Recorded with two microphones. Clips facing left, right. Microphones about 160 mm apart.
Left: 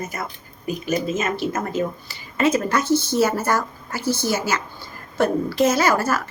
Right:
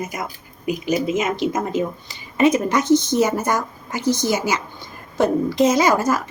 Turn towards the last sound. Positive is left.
turn(degrees=-15)  # may be behind; listen again after turning